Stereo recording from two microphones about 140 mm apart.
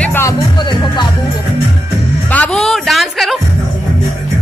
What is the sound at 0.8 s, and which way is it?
Music, 30° left (ahead or behind).